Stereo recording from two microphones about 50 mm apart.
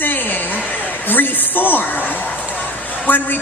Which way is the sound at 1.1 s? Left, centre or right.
Left.